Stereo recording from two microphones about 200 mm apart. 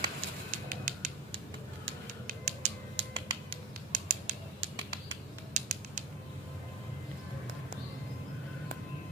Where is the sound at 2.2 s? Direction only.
45° right (ahead or behind).